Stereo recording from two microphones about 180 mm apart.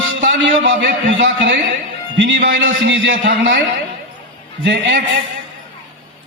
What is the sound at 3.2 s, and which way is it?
Speech, 80° right.